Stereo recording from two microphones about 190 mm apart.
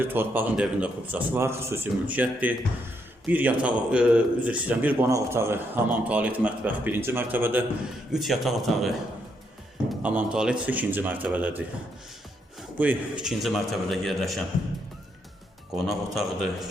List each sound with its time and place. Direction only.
0.0 s a man's voice: 10° right (ahead or behind)
9.9 s a man's voice: 5° right (ahead or behind)
12.7 s a man's voice: 10° right (ahead or behind)
15.7 s a man's voice: centre (ahead or behind)